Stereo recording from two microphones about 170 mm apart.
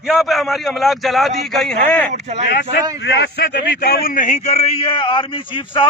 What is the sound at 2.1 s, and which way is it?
Speech, 40° right (ahead or behind).